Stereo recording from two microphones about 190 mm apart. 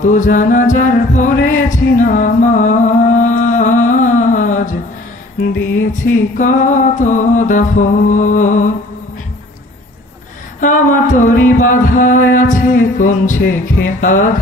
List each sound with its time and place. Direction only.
0.0 s music: 45° left (ahead or behind)
6.3 s music: 45° left (ahead or behind)
10.6 s mantra: 40° left (ahead or behind)